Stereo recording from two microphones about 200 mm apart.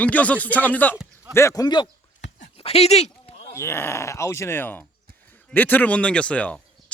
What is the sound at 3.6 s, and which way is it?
A man's voice, 15° left (ahead or behind).